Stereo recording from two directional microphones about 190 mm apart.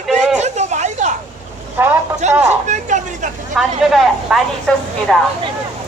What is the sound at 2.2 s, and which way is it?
Speech, 40° right (ahead or behind).